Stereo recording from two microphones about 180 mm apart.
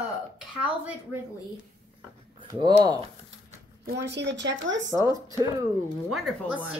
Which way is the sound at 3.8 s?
75° right (ahead or behind).